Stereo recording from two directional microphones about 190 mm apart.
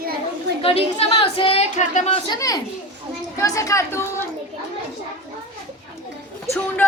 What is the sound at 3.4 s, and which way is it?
Female singing, 15° left (ahead or behind).